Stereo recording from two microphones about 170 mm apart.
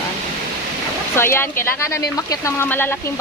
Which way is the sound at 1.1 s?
15° left (ahead or behind).